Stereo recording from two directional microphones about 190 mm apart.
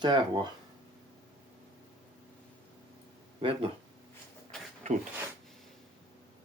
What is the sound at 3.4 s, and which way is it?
Speech, 30° right (ahead or behind).